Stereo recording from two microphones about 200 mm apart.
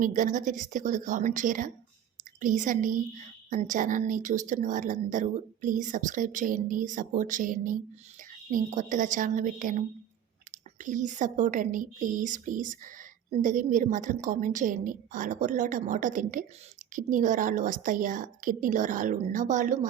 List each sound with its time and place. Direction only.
0.0 s speech: 40° right (ahead or behind)